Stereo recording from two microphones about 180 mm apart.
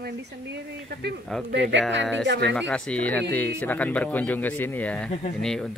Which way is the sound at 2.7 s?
5° left (ahead or behind).